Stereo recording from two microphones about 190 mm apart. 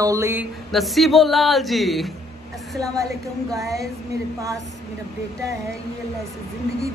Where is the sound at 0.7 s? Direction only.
Centre (ahead or behind).